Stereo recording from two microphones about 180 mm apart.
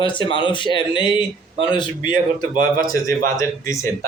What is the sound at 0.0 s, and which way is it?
Speech, 25° left (ahead or behind).